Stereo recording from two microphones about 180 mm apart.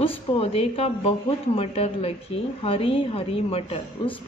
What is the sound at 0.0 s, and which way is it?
A woman's voice, 30° left (ahead or behind).